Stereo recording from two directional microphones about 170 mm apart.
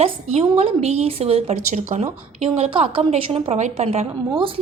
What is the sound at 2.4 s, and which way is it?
A woman's voice, 35° right (ahead or behind).